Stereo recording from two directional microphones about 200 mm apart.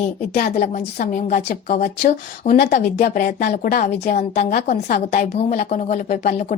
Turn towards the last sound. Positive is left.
turn(degrees=35)  # may be behind; listen again after turning